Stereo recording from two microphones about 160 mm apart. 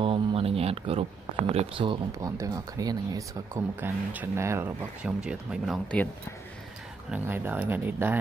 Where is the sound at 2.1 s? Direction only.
20° right (ahead or behind).